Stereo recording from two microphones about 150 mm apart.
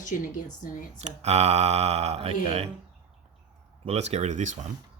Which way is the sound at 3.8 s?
45° right (ahead or behind).